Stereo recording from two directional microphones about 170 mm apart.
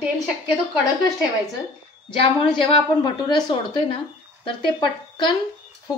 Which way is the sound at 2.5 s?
30° left (ahead or behind).